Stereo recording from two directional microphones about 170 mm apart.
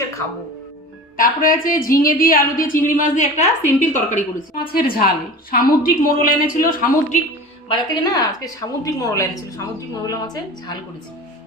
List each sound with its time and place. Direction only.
1.1 s a woman's voice: 55° left (ahead or behind)
4.7 s a woman's voice: 60° left (ahead or behind)
7.7 s a woman's voice: 25° left (ahead or behind)